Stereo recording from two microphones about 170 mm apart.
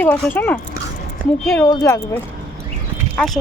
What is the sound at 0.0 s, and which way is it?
Speech, 10° left (ahead or behind).